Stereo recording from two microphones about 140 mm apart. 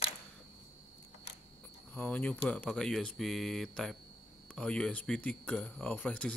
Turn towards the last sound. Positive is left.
turn(degrees=10)  # may be behind; listen again after turning